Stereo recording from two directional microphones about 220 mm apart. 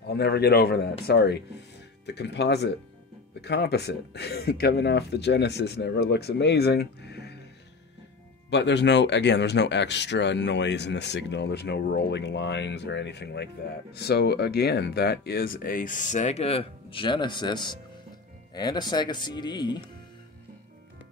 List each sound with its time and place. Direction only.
0.0 s speech: 50° left (ahead or behind)
8.5 s speech: 50° left (ahead or behind); by 19.8 s 20° left (ahead or behind)